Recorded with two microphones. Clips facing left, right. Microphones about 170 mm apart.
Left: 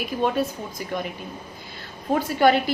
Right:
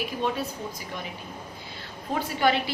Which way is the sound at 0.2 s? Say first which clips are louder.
Left 7 dB; 50° left (ahead or behind).